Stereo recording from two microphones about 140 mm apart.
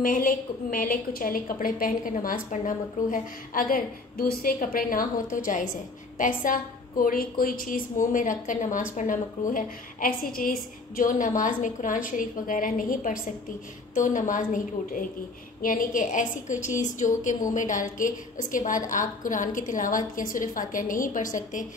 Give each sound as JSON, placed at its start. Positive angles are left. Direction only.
{"t": 0.0, "sound": "a woman's voice", "side_deg": 75}
{"t": 13.9, "sound": "a woman's voice", "side_deg": 65}